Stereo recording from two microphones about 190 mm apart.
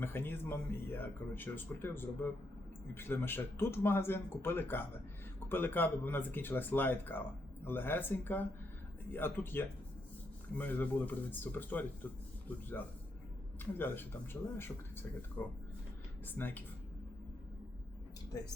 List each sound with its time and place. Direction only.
0.0 s speech: 10° left (ahead or behind)
13.7 s speech: 10° left (ahead or behind)
18.3 s speech: 20° left (ahead or behind)